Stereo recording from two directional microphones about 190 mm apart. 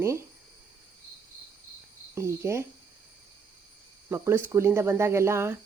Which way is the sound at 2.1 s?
15° right (ahead or behind).